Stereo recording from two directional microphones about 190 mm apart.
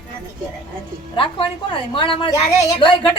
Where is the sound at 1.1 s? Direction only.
25° left (ahead or behind).